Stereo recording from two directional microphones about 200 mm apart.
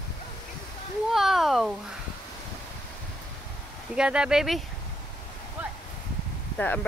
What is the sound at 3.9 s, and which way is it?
Speech, 5° right (ahead or behind).